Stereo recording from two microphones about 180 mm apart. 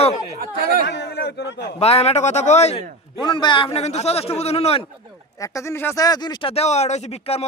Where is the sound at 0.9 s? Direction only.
70° left (ahead or behind).